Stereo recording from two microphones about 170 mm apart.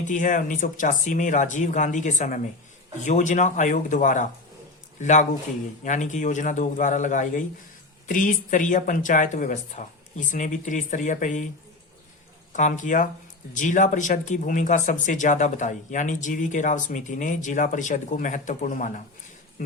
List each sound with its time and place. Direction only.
0.0 s a man's voice: 50° left (ahead or behind)
12.5 s speech: 45° left (ahead or behind)